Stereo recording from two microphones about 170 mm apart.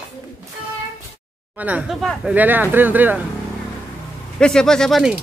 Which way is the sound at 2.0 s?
Centre (ahead or behind).